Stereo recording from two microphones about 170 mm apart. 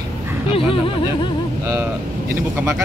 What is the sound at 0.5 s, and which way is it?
Speech, 30° left (ahead or behind).